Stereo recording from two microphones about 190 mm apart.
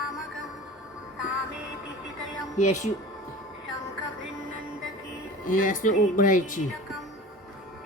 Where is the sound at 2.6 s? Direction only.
40° left (ahead or behind).